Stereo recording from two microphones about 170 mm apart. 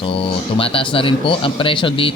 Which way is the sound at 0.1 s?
30° left (ahead or behind).